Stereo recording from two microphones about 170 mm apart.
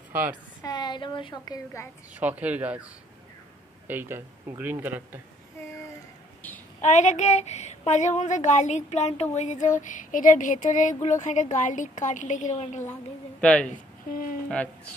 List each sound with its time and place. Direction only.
0.7 s a woman's voice: 25° left (ahead or behind)
2.1 s a man's voice: 10° right (ahead or behind)
6.8 s a sound: 45° left (ahead or behind)
13.4 s speech: 5° left (ahead or behind)